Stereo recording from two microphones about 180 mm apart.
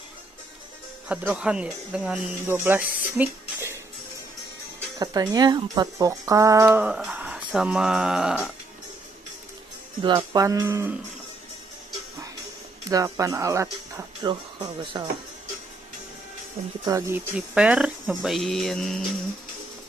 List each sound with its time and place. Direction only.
1.0 s speech: 5° right (ahead or behind)
3.2 s a sound: 15° right (ahead or behind)
4.9 s speech: 20° right (ahead or behind); by 8.5 s 5° right (ahead or behind)
10.0 s speech: 25° right (ahead or behind)
12.9 s speech: 20° right (ahead or behind)
16.8 s speech: 15° right (ahead or behind)
17.6 s speech: 5° right (ahead or behind)